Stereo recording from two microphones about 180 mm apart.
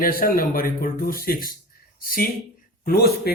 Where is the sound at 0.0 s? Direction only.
55° left (ahead or behind).